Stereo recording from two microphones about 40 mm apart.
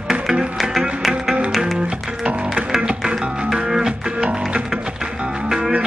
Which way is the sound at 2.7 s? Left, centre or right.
Centre.